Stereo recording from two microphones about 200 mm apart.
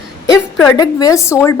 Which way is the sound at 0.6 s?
20° left (ahead or behind).